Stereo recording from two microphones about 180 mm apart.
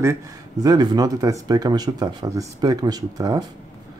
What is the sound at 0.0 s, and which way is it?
Speech, 20° right (ahead or behind).